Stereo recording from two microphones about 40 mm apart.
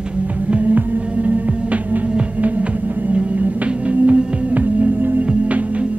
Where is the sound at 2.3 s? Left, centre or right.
Right.